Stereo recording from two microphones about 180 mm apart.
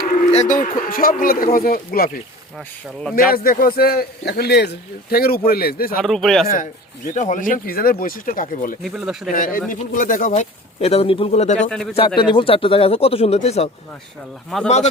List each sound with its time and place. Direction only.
0.1 s speech: 40° left (ahead or behind); by 2.0 s 55° left (ahead or behind)
3.2 s a man's voice: 55° left (ahead or behind)
6.0 s speech: centre (ahead or behind)
6.5 s speech: 45° left (ahead or behind)
8.8 s speech: 5° right (ahead or behind)
9.3 s speech: 50° left (ahead or behind)
10.8 s speech: 35° left (ahead or behind)
11.7 s speech: 5° left (ahead or behind)
11.9 s speech: 25° left (ahead or behind)